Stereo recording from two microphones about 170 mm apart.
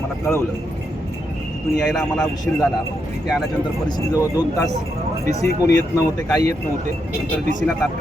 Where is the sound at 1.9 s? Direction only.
5° left (ahead or behind).